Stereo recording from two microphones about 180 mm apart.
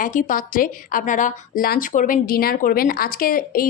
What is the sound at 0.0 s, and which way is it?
A woman's voice, 45° left (ahead or behind).